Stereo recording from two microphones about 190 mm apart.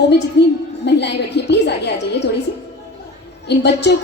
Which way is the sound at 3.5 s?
60° left (ahead or behind).